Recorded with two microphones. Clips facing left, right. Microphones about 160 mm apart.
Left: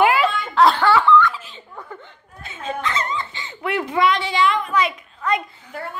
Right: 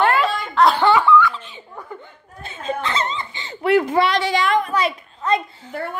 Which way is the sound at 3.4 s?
40° right (ahead or behind).